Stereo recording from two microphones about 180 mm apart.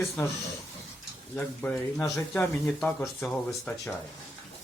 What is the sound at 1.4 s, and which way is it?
Speech, 10° left (ahead or behind).